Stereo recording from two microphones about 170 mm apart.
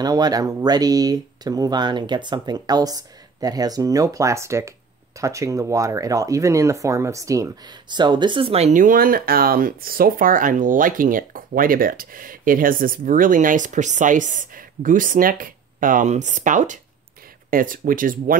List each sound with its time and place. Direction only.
0.0 s speech: 25° right (ahead or behind); by 18.4 s 55° right (ahead or behind)